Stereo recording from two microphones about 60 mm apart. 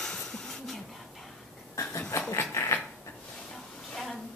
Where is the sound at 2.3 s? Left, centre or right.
Left.